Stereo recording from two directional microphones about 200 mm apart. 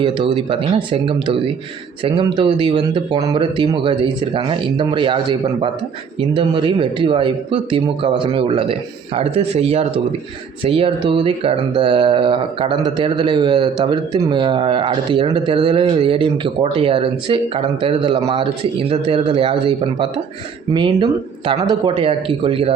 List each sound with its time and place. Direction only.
0.0 s speech: 25° right (ahead or behind)